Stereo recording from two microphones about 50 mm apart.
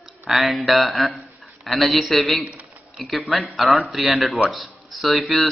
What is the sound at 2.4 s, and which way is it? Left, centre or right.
Speech, right.